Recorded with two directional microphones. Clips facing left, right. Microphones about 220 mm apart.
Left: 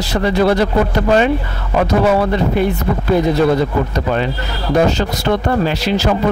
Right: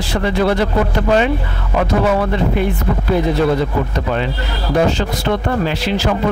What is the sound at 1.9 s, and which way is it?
Speech, 40° left (ahead or behind).